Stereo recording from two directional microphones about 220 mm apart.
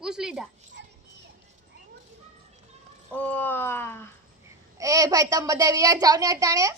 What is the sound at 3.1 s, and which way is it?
Speech, 5° left (ahead or behind).